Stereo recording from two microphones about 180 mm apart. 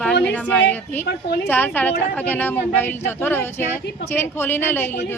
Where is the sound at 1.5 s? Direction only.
10° left (ahead or behind).